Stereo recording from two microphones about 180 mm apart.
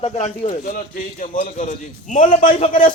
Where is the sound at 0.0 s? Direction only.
35° left (ahead or behind).